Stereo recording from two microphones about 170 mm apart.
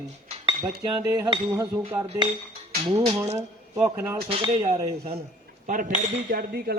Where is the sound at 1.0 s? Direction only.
20° right (ahead or behind).